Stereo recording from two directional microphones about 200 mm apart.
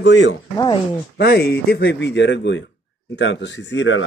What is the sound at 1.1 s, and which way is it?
Speech, 55° left (ahead or behind).